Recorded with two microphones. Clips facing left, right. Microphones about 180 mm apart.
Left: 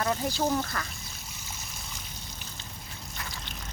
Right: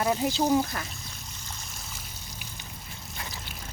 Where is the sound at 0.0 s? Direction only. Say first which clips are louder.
Right 3 dB; 15° right (ahead or behind).